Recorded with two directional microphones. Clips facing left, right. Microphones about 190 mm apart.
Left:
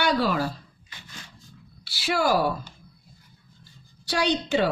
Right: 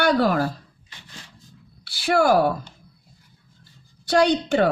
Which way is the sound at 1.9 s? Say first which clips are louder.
Right 5 dB; 55° right (ahead or behind).